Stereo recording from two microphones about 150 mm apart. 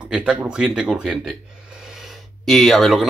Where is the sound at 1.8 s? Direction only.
Centre (ahead or behind).